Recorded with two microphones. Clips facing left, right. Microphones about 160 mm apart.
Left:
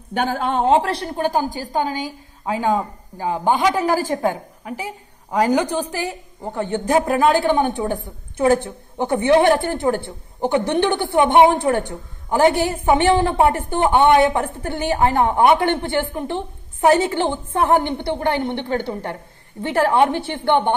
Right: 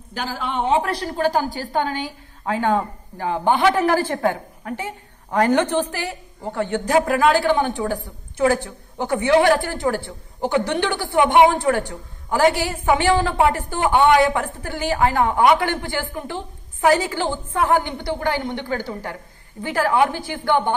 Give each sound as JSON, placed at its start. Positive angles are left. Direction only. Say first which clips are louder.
{"t": 0.1, "sound": "a woman's voice", "louder": "left 7 dB", "side_deg": 60}
{"t": 0.5, "sound": "a woman's voice", "louder": "left 2 dB", "side_deg": 40}
{"t": 1.0, "sound": "a woman's voice", "louder": "even", "side_deg": 20}